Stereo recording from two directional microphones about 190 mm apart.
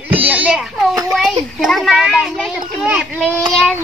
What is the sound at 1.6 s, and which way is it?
A child's voice, centre (ahead or behind).